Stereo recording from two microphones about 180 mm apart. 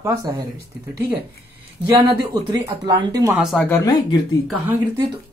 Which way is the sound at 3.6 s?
15° left (ahead or behind).